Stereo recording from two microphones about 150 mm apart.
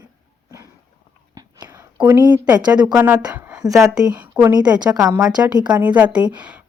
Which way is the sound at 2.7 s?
30° right (ahead or behind).